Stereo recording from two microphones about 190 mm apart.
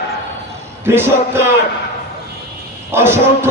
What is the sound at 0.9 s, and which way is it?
Speech, 10° right (ahead or behind).